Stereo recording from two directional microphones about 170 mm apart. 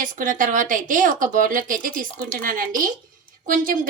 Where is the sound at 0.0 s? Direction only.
50° right (ahead or behind).